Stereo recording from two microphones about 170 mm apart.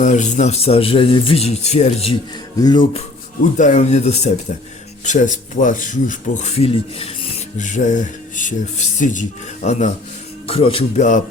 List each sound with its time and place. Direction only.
0.0 s a man's voice: 45° left (ahead or behind)
2.6 s speech: 25° left (ahead or behind)
3.6 s a man's voice: 45° left (ahead or behind)
10.4 s a man's voice: 35° left (ahead or behind)